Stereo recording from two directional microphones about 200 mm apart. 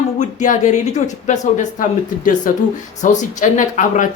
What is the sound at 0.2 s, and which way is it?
A woman's voice, 40° left (ahead or behind).